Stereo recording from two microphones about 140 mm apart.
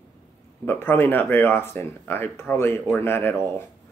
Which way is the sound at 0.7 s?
15° left (ahead or behind).